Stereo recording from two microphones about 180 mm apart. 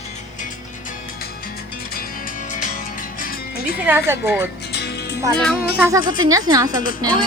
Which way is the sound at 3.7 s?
10° right (ahead or behind).